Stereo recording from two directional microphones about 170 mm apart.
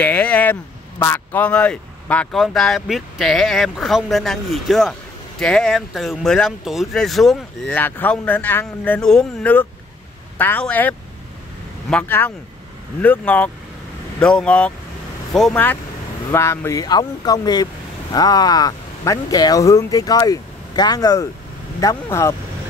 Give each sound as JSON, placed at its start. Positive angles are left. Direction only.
{"t": 0.0, "sound": "speech", "side_deg": 10}